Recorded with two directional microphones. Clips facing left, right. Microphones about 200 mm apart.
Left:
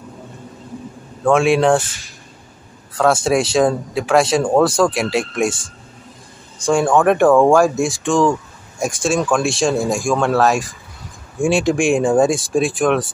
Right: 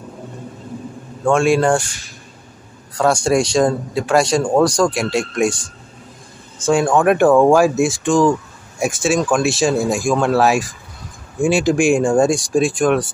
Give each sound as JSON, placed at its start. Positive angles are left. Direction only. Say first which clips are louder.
{"t": 1.2, "sound": "speech", "louder": "left 1 dB", "side_deg": 0}
{"t": 3.0, "sound": "speech", "louder": "even", "side_deg": 5}